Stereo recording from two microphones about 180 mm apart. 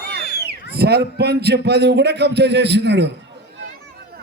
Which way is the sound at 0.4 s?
60° right (ahead or behind).